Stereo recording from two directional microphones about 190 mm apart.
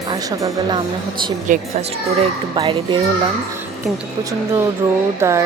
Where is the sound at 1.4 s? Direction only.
45° right (ahead or behind).